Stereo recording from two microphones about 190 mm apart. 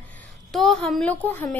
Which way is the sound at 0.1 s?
5° left (ahead or behind).